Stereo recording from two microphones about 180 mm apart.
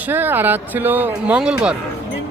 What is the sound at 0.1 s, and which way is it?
Speech, 10° right (ahead or behind).